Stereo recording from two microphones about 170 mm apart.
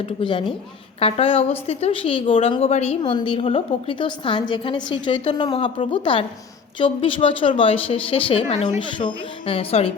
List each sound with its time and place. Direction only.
0.2 s a woman's voice: 30° left (ahead or behind)
3.0 s a woman's voice: 30° left (ahead or behind)